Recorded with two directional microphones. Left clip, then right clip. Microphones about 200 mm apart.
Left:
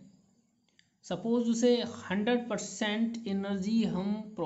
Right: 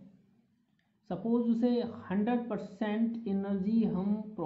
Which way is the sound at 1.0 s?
10° left (ahead or behind).